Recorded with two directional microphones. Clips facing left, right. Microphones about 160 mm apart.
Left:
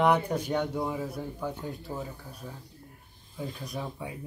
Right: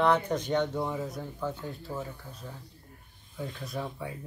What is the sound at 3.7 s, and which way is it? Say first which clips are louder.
Speech: right 1 dB; 15° left (ahead or behind).